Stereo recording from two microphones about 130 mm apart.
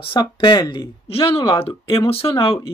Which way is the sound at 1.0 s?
45° left (ahead or behind).